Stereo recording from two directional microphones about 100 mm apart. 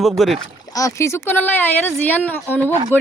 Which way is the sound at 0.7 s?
30° left (ahead or behind).